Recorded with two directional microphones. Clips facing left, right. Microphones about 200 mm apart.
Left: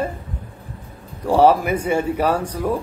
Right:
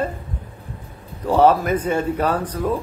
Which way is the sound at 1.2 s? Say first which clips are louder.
Left 1 dB; 10° left (ahead or behind).